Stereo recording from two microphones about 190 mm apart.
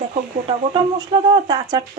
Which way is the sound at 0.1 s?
30° right (ahead or behind).